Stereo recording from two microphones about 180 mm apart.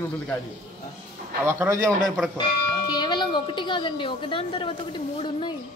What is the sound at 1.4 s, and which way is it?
Speech, 15° right (ahead or behind).